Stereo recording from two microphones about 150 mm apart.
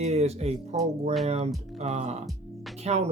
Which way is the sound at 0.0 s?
45° right (ahead or behind).